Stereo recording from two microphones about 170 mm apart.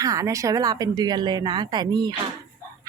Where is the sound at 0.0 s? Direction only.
20° right (ahead or behind).